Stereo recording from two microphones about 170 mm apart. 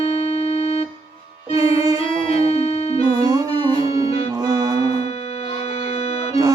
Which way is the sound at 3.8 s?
35° left (ahead or behind).